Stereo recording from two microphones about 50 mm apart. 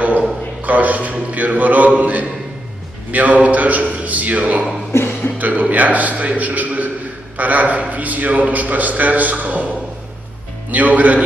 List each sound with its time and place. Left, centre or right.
0.6 s a man's voice: right
10.7 s a man's voice: right